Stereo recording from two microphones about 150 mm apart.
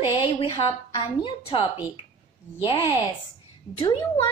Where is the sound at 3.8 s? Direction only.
35° left (ahead or behind).